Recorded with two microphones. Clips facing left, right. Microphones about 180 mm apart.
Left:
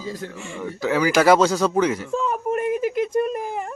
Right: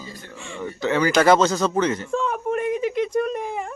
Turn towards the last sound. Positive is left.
turn(degrees=0)  # may be behind; listen again after turning